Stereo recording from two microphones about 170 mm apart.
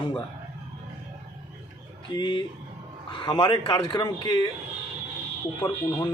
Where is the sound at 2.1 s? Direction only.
25° left (ahead or behind).